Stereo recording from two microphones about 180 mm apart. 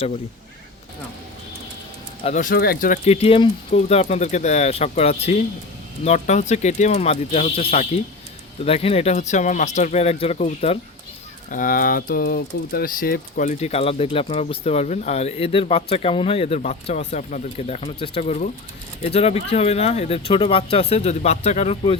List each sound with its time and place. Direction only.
2.2 s speech: 45° left (ahead or behind)
3.0 s speech: 35° left (ahead or behind)
11.5 s speech: 50° left (ahead or behind)